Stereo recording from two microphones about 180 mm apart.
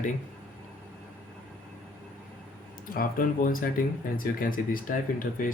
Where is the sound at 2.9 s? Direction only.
50° left (ahead or behind).